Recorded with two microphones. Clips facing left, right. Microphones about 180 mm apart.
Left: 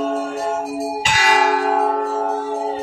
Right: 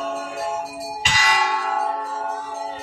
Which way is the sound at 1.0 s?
60° left (ahead or behind).